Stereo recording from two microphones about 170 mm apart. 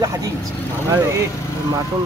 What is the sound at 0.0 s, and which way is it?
Speech, 20° right (ahead or behind).